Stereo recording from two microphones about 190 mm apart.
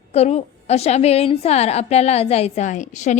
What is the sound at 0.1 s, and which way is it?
A woman's voice, 35° left (ahead or behind).